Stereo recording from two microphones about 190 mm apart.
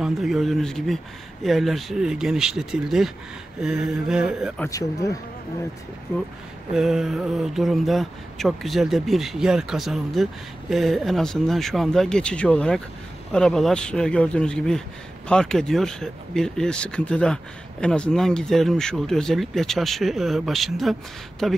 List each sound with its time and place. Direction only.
0.0 s speech: centre (ahead or behind)
4.6 s speech: 15° left (ahead or behind)
6.7 s speech: centre (ahead or behind)